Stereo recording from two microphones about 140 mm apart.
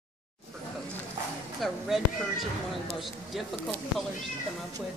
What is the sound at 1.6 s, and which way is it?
Speech, centre (ahead or behind).